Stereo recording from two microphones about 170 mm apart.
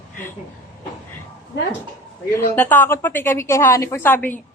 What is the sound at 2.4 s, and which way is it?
A man's voice, 15° left (ahead or behind).